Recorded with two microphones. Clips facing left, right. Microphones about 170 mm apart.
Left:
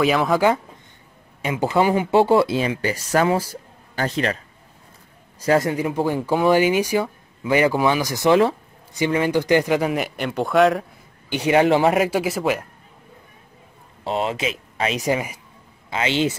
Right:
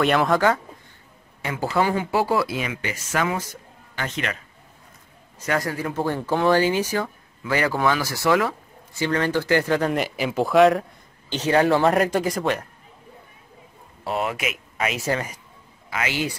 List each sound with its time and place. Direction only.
0.0 s speech: centre (ahead or behind)
1.4 s speech: 20° left (ahead or behind)
5.4 s speech: 25° left (ahead or behind)
9.0 s speech: 15° left (ahead or behind)
11.2 s speech: 10° left (ahead or behind)
11.9 s speech: 5° left (ahead or behind)
14.0 s speech: 25° left (ahead or behind)
15.0 s speech: 15° left (ahead or behind)
15.9 s a man's voice: 25° left (ahead or behind)